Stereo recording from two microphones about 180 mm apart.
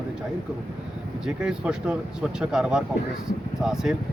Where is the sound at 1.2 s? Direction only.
5° right (ahead or behind).